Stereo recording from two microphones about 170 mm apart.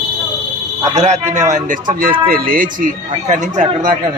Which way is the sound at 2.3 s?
55° right (ahead or behind).